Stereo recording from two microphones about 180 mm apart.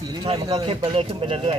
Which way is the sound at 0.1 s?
25° right (ahead or behind).